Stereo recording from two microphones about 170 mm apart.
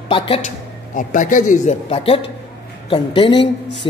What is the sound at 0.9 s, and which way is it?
Speech, 50° left (ahead or behind).